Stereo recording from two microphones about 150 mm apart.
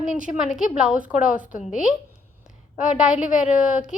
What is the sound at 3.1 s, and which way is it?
Speech, 55° left (ahead or behind).